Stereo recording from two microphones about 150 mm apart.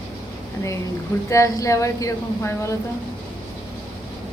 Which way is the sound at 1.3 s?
20° left (ahead or behind).